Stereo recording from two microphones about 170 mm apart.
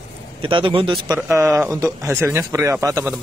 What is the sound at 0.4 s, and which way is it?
Speech, 30° right (ahead or behind).